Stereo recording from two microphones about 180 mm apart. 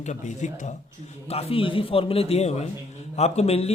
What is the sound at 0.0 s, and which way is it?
A man's voice, 40° left (ahead or behind).